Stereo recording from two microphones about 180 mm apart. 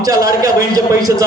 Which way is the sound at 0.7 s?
20° right (ahead or behind).